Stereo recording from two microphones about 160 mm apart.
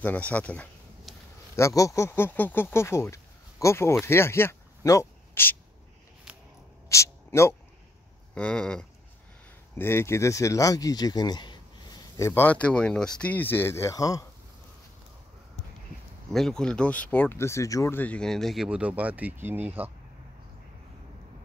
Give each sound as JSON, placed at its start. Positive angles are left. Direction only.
{"t": 0.0, "sound": "speech", "side_deg": 10}
{"t": 6.9, "sound": "a sound", "side_deg": 20}
{"t": 8.4, "sound": "speech", "side_deg": 5}
{"t": 9.8, "sound": "speech", "side_deg": 15}
{"t": 16.3, "sound": "speech", "side_deg": 0}